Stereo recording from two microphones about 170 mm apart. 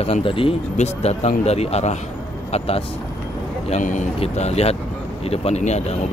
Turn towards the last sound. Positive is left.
turn(degrees=40)  # may be behind; listen again after turning